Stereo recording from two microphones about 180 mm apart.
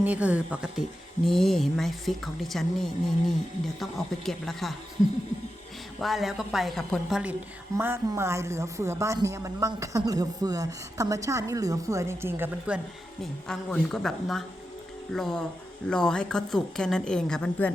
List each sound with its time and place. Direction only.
0.0 s speech: 10° right (ahead or behind)
6.0 s a woman's voice: centre (ahead or behind)
13.5 s speech: centre (ahead or behind)